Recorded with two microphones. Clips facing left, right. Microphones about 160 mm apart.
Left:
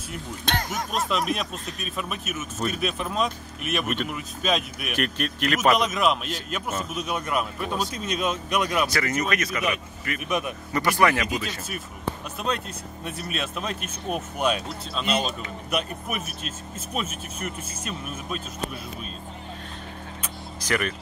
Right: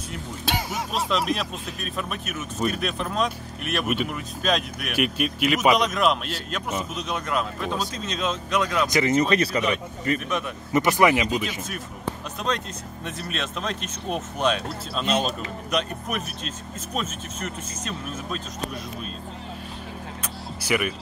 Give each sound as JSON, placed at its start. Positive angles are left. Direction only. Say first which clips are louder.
{"t": 0.5, "sound": "speech", "louder": "even", "side_deg": -5}
{"t": 8.8, "sound": "speech", "louder": "right 5 dB", "side_deg": -20}
{"t": 10.7, "sound": "speech", "louder": "right 3 dB", "side_deg": -20}
{"t": 13.0, "sound": "speech", "louder": "even", "side_deg": 10}
{"t": 20.6, "sound": "speech", "louder": "right 2 dB", "side_deg": -10}